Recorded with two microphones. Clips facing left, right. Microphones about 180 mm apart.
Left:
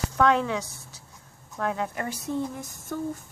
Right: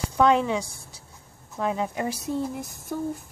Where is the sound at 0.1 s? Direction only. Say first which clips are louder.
Right 2 dB; 20° right (ahead or behind).